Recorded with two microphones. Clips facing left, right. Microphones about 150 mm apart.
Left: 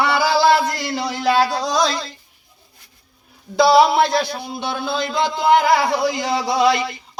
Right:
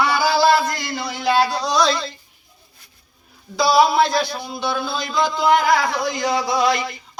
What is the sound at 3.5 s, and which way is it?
Music, 65° left (ahead or behind).